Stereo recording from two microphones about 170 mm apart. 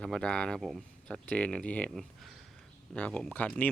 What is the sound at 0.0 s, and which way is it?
Speech, 5° left (ahead or behind).